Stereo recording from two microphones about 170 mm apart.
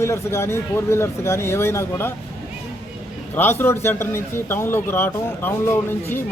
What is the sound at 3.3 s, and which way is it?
A man's voice, 15° left (ahead or behind).